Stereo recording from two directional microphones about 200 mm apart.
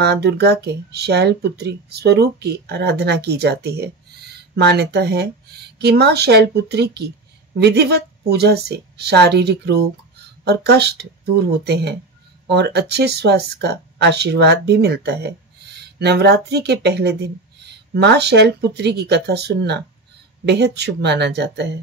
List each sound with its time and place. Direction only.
0.0 s speech: 55° right (ahead or behind)